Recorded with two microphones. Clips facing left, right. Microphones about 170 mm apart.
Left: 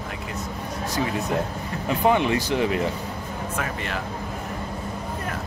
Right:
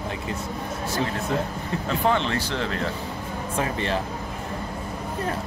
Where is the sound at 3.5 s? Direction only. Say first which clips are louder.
Right 5 dB; 30° right (ahead or behind).